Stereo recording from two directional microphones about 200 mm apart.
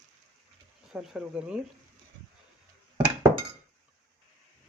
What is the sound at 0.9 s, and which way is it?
Speech, 5° right (ahead or behind).